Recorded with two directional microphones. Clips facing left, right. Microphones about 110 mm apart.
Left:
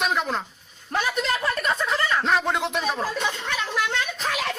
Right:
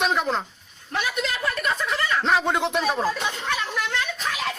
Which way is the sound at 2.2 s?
Centre (ahead or behind).